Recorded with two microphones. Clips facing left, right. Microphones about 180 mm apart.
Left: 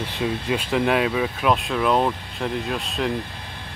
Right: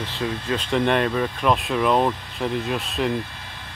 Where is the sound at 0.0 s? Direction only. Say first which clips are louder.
Left 2 dB; 15° left (ahead or behind).